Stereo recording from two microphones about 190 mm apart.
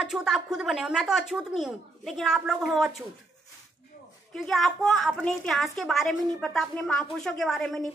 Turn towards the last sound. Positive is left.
turn(degrees=0)  # may be behind; listen again after turning